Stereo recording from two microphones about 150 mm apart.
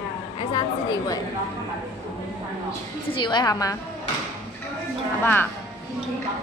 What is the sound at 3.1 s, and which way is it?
Speech, 30° left (ahead or behind).